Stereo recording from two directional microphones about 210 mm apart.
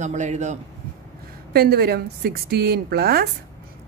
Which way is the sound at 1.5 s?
45° right (ahead or behind).